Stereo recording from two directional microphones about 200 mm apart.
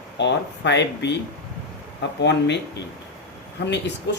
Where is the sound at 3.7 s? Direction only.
60° left (ahead or behind).